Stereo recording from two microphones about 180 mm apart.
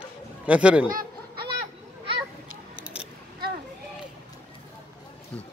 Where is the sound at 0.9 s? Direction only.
50° right (ahead or behind).